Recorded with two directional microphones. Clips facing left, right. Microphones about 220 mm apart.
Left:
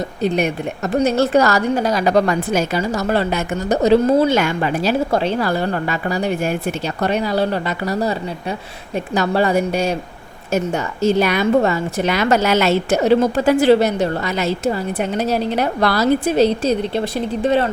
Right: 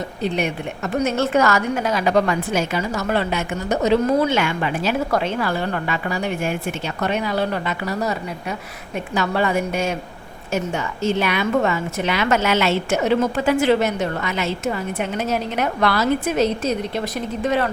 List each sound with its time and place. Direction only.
0.2 s a woman's voice: 40° left (ahead or behind)